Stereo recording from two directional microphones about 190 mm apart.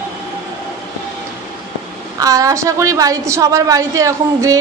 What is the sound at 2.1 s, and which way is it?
A woman's voice, 20° right (ahead or behind).